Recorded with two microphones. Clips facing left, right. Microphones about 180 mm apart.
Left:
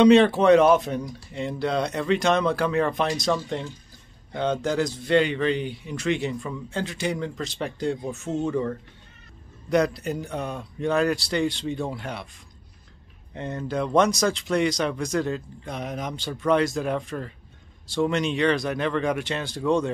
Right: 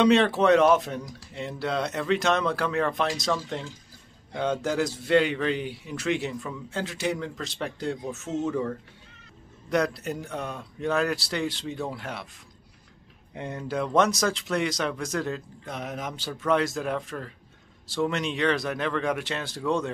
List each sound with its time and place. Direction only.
0.0 s a man's voice: centre (ahead or behind)
13.3 s a man's voice: 10° right (ahead or behind)